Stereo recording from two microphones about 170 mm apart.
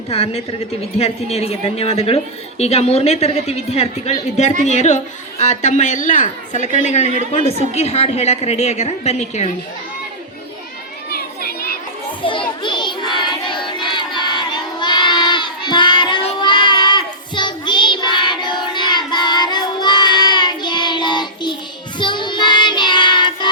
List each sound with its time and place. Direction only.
0.1 s a woman's voice: 35° left (ahead or behind)
11.1 s children playing: 65° left (ahead or behind)
12.2 s child singing: 30° left (ahead or behind)